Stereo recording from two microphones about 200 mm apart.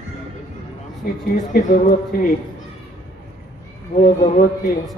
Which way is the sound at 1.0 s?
50° left (ahead or behind).